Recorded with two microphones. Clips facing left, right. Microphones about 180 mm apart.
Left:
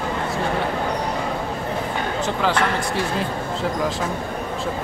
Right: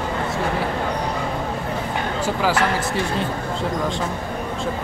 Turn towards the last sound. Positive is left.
turn(degrees=-5)  # may be behind; listen again after turning